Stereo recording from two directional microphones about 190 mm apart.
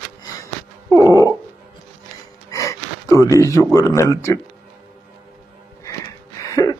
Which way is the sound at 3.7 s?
15° left (ahead or behind).